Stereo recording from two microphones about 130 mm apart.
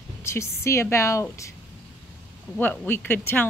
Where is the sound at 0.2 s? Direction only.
20° left (ahead or behind).